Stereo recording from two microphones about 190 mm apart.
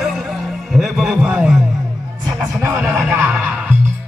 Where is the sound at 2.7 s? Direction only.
10° right (ahead or behind).